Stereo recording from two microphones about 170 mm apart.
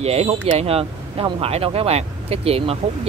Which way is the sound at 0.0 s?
35° right (ahead or behind).